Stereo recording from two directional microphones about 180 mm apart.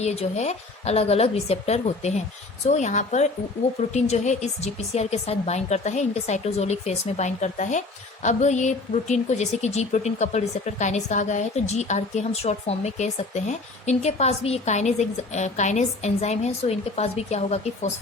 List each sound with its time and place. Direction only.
0.0 s speech: 40° left (ahead or behind)